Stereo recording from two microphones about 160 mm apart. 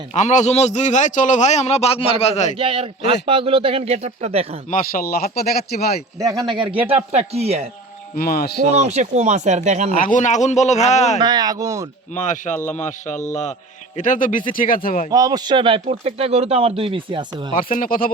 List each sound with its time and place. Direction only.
0.1 s a man's voice: 45° left (ahead or behind)
2.6 s speech: 35° right (ahead or behind)
4.7 s speech: 65° left (ahead or behind)
6.1 s speech: 20° right (ahead or behind)
6.6 s speech: 35° right (ahead or behind)
8.1 s speech: 65° left (ahead or behind)
8.7 s speech: 45° right (ahead or behind)
10.0 s a man's voice: 55° left (ahead or behind)
11.2 s speech: 25° right (ahead or behind)
12.1 s a man's voice: 50° left (ahead or behind)
15.1 s speech: 25° right (ahead or behind)
17.6 s speech: 60° left (ahead or behind)